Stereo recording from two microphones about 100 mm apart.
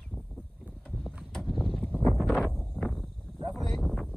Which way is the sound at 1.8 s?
20° left (ahead or behind).